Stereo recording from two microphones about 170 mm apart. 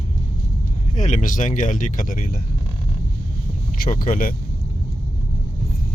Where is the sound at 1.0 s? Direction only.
45° left (ahead or behind).